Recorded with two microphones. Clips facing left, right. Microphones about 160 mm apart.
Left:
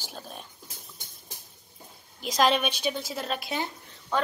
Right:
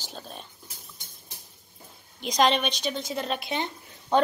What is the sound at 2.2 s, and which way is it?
A woman's voice, 5° left (ahead or behind).